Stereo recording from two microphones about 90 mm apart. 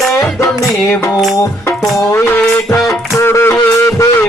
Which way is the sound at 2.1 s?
25° left (ahead or behind).